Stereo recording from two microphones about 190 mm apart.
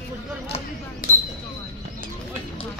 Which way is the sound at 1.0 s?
50° left (ahead or behind).